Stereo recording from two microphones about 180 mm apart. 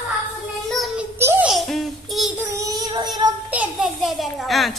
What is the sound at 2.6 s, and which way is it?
Child singing, 20° right (ahead or behind).